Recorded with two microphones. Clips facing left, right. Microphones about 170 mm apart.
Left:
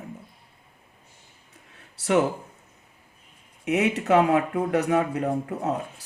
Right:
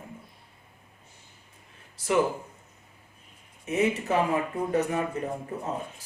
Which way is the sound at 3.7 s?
75° left (ahead or behind).